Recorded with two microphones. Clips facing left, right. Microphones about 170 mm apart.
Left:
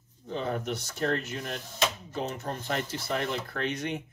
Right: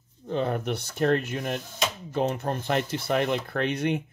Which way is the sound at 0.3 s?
60° right (ahead or behind).